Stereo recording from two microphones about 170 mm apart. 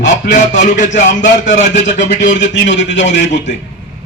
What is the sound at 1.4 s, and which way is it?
A man's voice, 90° left.